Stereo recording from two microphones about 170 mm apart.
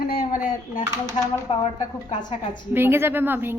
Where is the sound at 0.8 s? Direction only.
20° right (ahead or behind).